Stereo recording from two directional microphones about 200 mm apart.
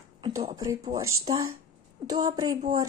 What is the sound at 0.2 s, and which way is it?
A woman's voice, 20° right (ahead or behind).